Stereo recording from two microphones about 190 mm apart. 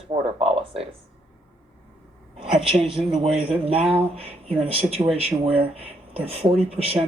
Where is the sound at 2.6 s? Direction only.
30° right (ahead or behind).